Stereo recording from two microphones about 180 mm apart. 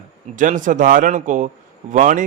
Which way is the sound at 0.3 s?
45° right (ahead or behind).